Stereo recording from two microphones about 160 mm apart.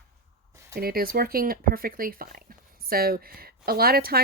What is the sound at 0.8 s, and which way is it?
Speech, 70° right (ahead or behind).